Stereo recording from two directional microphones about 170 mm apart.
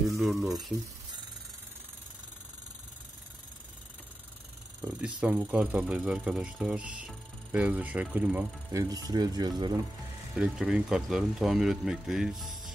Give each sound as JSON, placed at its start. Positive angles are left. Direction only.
{"t": 0.2, "sound": "speech", "side_deg": 0}
{"t": 5.2, "sound": "speech", "side_deg": -5}
{"t": 8.7, "sound": "speech", "side_deg": -20}
{"t": 10.3, "sound": "speech", "side_deg": -5}